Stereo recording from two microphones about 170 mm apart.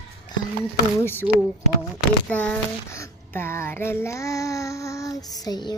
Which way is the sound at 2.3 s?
5° left (ahead or behind).